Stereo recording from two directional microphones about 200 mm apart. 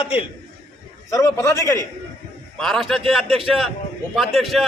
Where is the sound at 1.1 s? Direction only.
15° left (ahead or behind).